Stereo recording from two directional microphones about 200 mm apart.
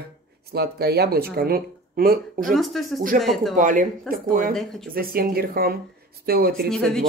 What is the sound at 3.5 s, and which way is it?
Speech, 40° right (ahead or behind).